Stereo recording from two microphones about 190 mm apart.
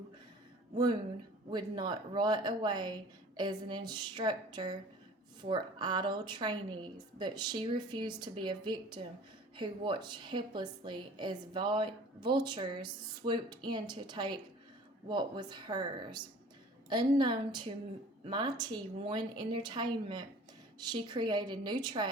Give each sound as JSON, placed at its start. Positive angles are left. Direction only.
{"t": 1.5, "sound": "a woman's voice", "side_deg": -25}